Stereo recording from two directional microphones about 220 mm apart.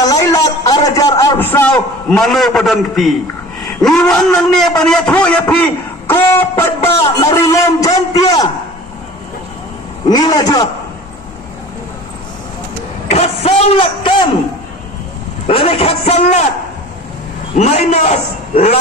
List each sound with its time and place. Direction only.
0.0 s a sound: 15° left (ahead or behind); by 3.2 s centre (ahead or behind)
3.8 s a man's voice: 5° left (ahead or behind)
10.0 s a man's voice: 20° left (ahead or behind)
13.1 s a man's voice: 25° left (ahead or behind)
15.4 s a man's voice: 25° left (ahead or behind)
17.6 s a man's voice: 30° left (ahead or behind)